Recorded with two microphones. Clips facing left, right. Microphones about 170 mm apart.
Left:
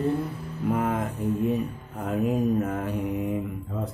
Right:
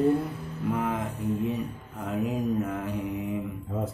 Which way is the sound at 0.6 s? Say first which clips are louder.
Left 3 dB; 45° left (ahead or behind).